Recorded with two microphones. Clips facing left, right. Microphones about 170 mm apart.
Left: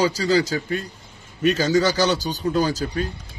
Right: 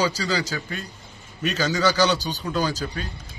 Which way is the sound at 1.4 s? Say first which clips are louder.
Left 4 dB; 45° left (ahead or behind).